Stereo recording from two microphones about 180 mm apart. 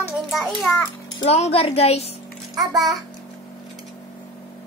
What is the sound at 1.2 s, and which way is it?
Speech, 35° left (ahead or behind).